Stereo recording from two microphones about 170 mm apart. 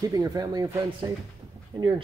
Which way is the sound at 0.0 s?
20° right (ahead or behind).